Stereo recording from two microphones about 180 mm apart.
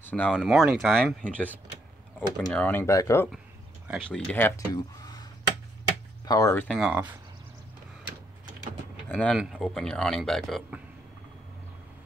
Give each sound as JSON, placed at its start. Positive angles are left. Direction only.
{"t": 0.0, "sound": "a man's voice", "side_deg": 5}
{"t": 6.2, "sound": "speech", "side_deg": 20}
{"t": 6.7, "sound": "speech", "side_deg": -5}
{"t": 9.1, "sound": "a man's voice", "side_deg": 5}